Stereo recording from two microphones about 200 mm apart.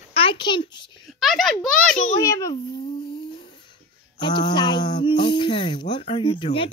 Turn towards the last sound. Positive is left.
turn(degrees=25)  # may be behind; listen again after turning